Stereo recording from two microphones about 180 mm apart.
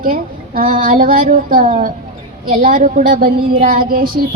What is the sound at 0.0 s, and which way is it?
Speech, 50° right (ahead or behind).